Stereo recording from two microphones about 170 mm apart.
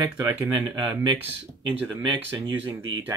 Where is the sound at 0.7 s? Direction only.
25° right (ahead or behind).